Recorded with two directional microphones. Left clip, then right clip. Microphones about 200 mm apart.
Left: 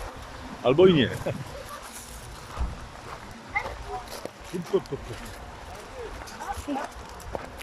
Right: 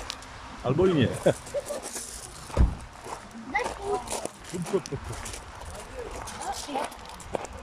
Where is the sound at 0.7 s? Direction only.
5° left (ahead or behind).